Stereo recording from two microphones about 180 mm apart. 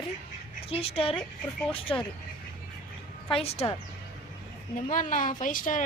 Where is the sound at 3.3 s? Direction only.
35° left (ahead or behind).